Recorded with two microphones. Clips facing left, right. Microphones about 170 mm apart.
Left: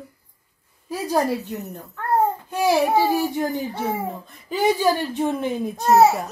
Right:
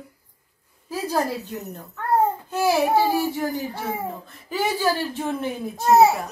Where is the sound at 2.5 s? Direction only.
15° left (ahead or behind).